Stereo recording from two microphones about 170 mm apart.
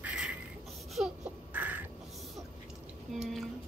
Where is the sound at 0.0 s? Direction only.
5° right (ahead or behind).